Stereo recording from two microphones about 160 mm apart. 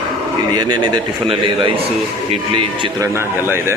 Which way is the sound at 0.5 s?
25° right (ahead or behind).